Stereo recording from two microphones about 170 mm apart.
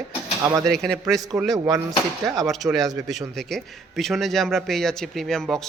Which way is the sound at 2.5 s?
Centre (ahead or behind).